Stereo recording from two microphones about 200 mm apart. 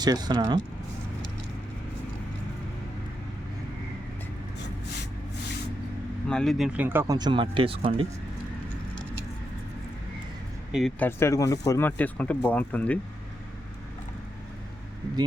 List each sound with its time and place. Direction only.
0.0 s speech: 20° right (ahead or behind)
6.2 s speech: 5° left (ahead or behind); by 8.0 s 30° right (ahead or behind)
10.7 s speech: centre (ahead or behind)
11.0 s speech: 15° left (ahead or behind)